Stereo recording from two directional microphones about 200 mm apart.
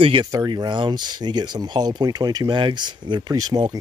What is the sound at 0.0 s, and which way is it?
Speech, 25° right (ahead or behind).